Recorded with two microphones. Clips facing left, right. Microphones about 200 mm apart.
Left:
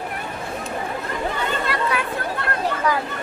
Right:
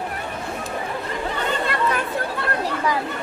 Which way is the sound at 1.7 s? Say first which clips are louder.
Right 1 dB; 45° right (ahead or behind).